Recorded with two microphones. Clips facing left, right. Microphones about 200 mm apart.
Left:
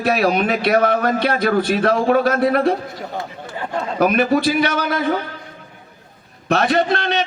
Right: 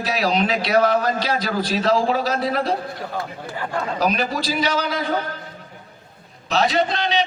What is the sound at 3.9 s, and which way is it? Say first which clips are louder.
A man's voice: left 8 dB; 55° left (ahead or behind).